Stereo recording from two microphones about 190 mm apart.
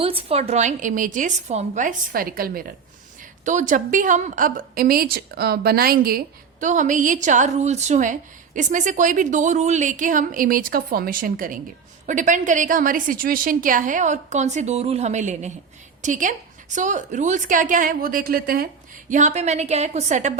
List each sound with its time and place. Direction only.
0.0 s a woman's voice: 30° right (ahead or behind); by 18.7 s 50° right (ahead or behind)
19.1 s a woman's voice: 40° right (ahead or behind)